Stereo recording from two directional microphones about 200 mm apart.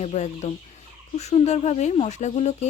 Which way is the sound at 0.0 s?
35° left (ahead or behind).